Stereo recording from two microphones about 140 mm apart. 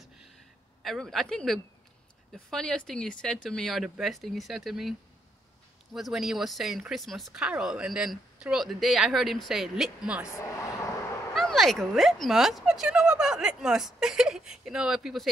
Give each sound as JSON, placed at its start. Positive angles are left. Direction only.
{"t": 0.8, "sound": "speech", "side_deg": 0}
{"t": 5.9, "sound": "speech", "side_deg": 0}
{"t": 10.2, "sound": "a sound", "side_deg": 20}
{"t": 11.3, "sound": "speech", "side_deg": 0}